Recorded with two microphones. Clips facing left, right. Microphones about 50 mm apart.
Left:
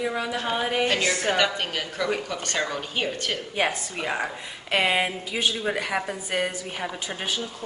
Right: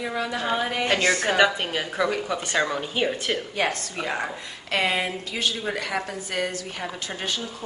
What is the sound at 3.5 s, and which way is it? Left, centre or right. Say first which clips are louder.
A woman's voice: even; centre.